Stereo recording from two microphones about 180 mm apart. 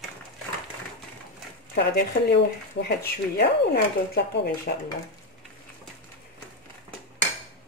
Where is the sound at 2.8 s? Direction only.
60° left (ahead or behind).